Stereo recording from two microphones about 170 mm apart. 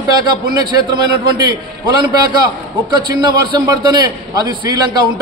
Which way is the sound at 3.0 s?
25° right (ahead or behind).